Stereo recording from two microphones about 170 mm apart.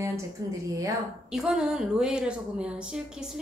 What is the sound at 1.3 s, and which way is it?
A woman's voice, 5° right (ahead or behind).